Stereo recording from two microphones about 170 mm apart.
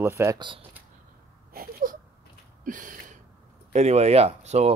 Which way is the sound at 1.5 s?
60° right (ahead or behind).